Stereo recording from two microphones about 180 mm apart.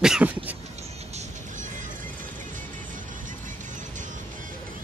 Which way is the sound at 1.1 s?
45° right (ahead or behind).